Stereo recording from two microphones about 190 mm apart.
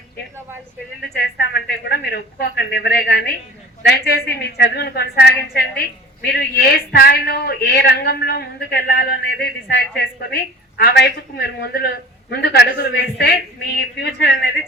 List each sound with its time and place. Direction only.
1.0 s a woman's voice: 60° left (ahead or behind)